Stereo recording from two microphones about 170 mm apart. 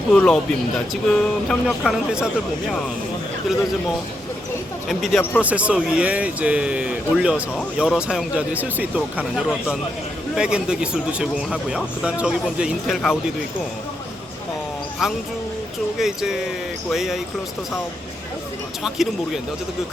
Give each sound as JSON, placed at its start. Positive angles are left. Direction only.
{"t": 0.1, "sound": "speech", "side_deg": 5}
{"t": 4.9, "sound": "speech", "side_deg": 0}
{"t": 16.0, "sound": "speech", "side_deg": 0}
{"t": 18.8, "sound": "speech", "side_deg": 0}